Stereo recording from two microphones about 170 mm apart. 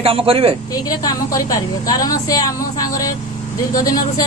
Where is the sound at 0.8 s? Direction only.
20° left (ahead or behind).